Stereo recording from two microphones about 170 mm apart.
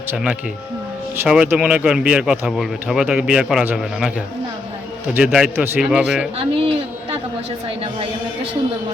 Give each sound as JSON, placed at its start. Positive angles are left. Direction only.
{"t": 0.1, "sound": "speech", "side_deg": -5}
{"t": 5.1, "sound": "speech", "side_deg": -5}
{"t": 6.4, "sound": "a sound", "side_deg": -35}